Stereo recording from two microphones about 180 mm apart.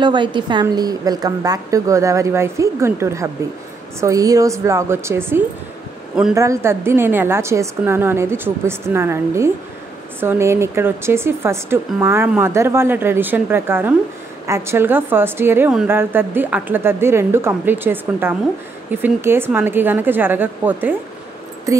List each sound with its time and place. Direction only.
0.0 s a woman's voice: 25° right (ahead or behind); by 21.0 s 10° right (ahead or behind)